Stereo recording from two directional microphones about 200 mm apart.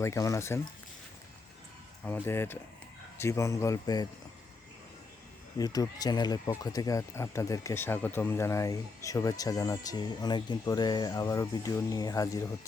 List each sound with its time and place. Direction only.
0.0 s speech: 15° left (ahead or behind)
2.2 s speech: 10° left (ahead or behind)
5.5 s speech: 20° left (ahead or behind)